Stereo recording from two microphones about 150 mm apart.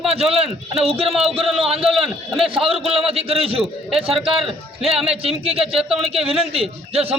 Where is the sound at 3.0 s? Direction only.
40° right (ahead or behind).